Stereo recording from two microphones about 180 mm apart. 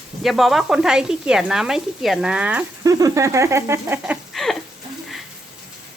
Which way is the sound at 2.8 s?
20° right (ahead or behind).